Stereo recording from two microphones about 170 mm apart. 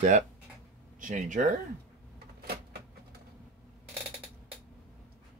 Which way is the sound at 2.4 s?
65° right (ahead or behind).